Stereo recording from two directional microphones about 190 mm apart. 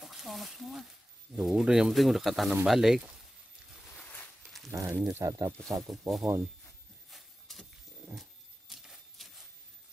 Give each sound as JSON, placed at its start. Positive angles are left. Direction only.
{"t": 0.0, "sound": "speech", "side_deg": 0}
{"t": 4.6, "sound": "speech", "side_deg": -15}
{"t": 5.6, "sound": "speech", "side_deg": 0}
{"t": 7.1, "sound": "a sound", "side_deg": 0}